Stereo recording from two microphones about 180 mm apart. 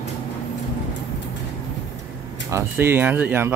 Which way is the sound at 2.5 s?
10° right (ahead or behind).